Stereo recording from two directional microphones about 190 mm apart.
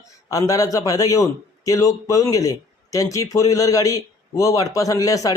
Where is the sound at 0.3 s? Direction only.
15° left (ahead or behind).